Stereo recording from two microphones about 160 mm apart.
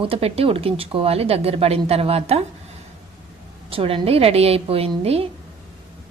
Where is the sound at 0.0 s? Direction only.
35° right (ahead or behind).